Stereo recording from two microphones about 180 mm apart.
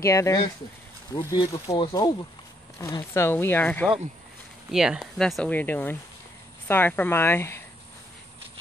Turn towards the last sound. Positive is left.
turn(degrees=15)  # may be behind; listen again after turning